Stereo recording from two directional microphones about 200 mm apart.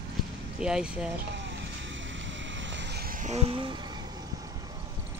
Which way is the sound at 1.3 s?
65° right (ahead or behind).